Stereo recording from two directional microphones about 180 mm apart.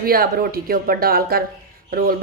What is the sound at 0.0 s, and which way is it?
A woman's voice, 55° right (ahead or behind).